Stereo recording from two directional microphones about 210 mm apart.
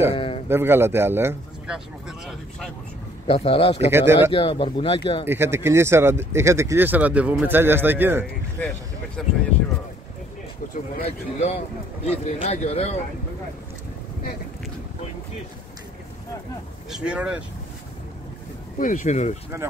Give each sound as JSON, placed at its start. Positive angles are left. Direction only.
{"t": 0.1, "sound": "a sound", "side_deg": 25}
{"t": 0.5, "sound": "speech", "side_deg": -10}
{"t": 3.3, "sound": "speech", "side_deg": 25}
{"t": 3.9, "sound": "speech", "side_deg": -10}
{"t": 4.3, "sound": "speech", "side_deg": 25}
{"t": 5.2, "sound": "speech", "side_deg": -10}
{"t": 8.6, "sound": "speech", "side_deg": 10}
{"t": 10.7, "sound": "a man's voice", "side_deg": 30}
{"t": 16.9, "sound": "speech", "side_deg": -5}
{"t": 18.8, "sound": "a man's voice", "side_deg": 40}
{"t": 19.5, "sound": "speech", "side_deg": -15}